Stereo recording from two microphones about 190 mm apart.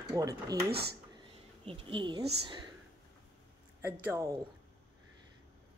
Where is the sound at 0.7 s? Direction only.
55° right (ahead or behind).